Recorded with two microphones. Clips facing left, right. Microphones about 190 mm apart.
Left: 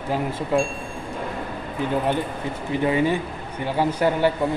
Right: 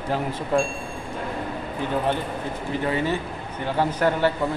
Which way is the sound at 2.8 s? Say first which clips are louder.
Left 5 dB; 15° left (ahead or behind).